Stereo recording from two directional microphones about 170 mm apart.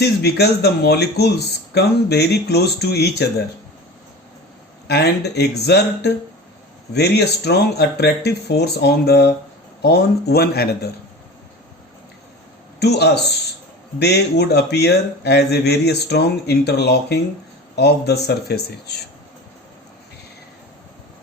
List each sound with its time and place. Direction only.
0.0 s speech: 70° left (ahead or behind)
4.9 s speech: 75° left (ahead or behind)
12.8 s speech: 75° left (ahead or behind)